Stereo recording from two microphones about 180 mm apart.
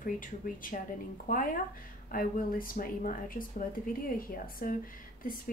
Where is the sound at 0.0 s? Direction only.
50° left (ahead or behind).